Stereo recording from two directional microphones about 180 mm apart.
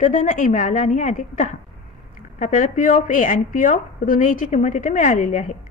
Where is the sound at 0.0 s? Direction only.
45° left (ahead or behind).